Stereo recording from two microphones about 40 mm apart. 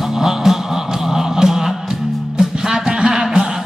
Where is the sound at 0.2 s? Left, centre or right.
Centre.